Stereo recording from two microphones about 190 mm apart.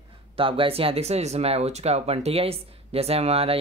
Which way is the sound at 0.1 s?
30° right (ahead or behind).